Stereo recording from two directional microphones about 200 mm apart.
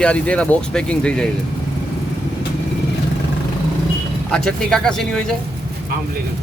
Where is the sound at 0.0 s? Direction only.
5° left (ahead or behind).